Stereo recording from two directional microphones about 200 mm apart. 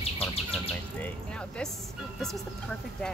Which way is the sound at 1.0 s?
5° left (ahead or behind).